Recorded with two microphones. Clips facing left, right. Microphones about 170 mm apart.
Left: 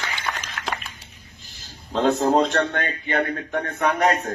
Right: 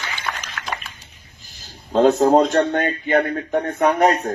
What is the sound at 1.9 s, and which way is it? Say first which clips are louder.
A man's voice: right 5 dB; 50° right (ahead or behind).